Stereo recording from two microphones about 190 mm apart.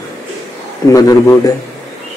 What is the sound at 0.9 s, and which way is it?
Speech, 15° left (ahead or behind).